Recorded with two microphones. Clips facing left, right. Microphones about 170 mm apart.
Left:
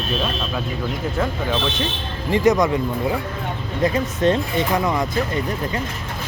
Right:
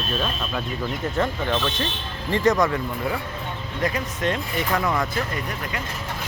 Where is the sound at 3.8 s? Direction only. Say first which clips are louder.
Left 6 dB; 25° left (ahead or behind).